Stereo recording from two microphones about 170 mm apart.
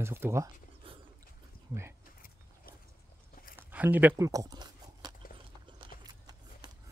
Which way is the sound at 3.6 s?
10° right (ahead or behind).